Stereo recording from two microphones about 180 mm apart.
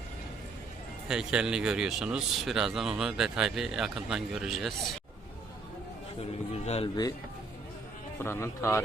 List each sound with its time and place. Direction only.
1.0 s speech: 5° right (ahead or behind)
6.5 s music: 35° left (ahead or behind)
8.2 s speech: 15° left (ahead or behind)